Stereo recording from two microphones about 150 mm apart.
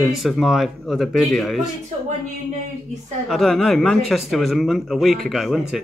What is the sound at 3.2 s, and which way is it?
Speech, centre (ahead or behind).